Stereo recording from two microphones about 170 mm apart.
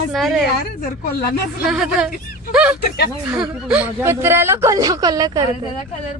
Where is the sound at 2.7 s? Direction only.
70° left (ahead or behind).